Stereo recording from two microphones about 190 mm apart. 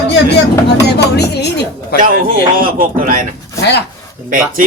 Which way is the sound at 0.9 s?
60° left (ahead or behind).